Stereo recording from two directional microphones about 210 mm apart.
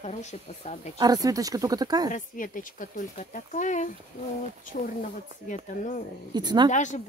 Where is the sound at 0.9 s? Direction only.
15° right (ahead or behind).